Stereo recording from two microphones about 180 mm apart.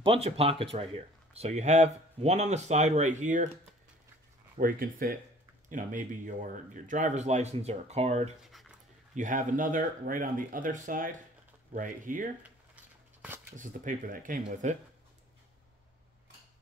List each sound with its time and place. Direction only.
0.0 s speech: 35° right (ahead or behind)
4.6 s speech: 50° right (ahead or behind)
8.4 s a sound: centre (ahead or behind)
9.1 s speech: 45° right (ahead or behind)
13.6 s speech: 50° right (ahead or behind)